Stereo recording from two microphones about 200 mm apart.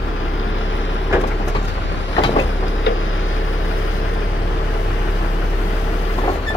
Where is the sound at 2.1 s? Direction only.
30° left (ahead or behind).